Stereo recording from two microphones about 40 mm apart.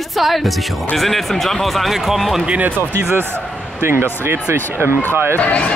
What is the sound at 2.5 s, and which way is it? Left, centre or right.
Speech, right.